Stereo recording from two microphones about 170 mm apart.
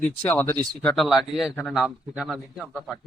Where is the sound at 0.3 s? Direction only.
15° left (ahead or behind).